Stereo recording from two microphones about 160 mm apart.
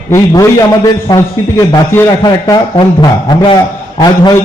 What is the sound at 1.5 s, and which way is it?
A man's voice, 15° left (ahead or behind).